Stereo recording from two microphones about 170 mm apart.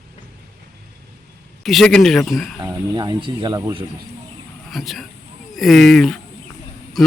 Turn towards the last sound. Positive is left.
turn(degrees=0)  # may be behind; listen again after turning